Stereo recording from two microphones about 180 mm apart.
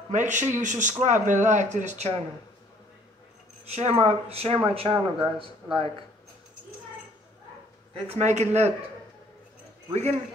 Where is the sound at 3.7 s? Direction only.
35° right (ahead or behind).